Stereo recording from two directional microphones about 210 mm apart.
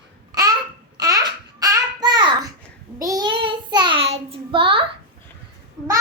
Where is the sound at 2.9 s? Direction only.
15° right (ahead or behind).